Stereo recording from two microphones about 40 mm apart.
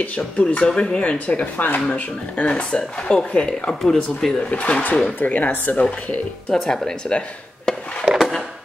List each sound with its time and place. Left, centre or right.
0.0 s speech: left
0.7 s speech: left
1.0 s speech: left
2.0 s speech: left; by 4.4 s centre
4.4 s speech: left
6.5 s speech: centre
7.7 s a sound: centre